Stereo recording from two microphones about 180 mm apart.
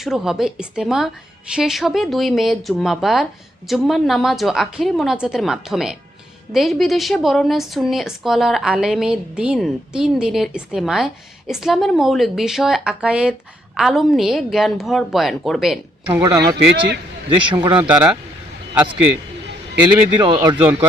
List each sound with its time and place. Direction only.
0.0 s a woman's voice: centre (ahead or behind)
16.0 s a man's voice: 15° right (ahead or behind)
17.2 s speech: 25° right (ahead or behind)
17.8 s a man's voice: 10° right (ahead or behind)
20.1 s speech: 25° right (ahead or behind)